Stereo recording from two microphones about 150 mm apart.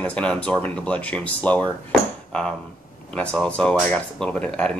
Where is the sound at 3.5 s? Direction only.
5° left (ahead or behind).